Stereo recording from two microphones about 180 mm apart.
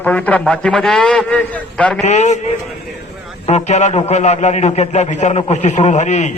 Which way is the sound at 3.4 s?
40° left (ahead or behind).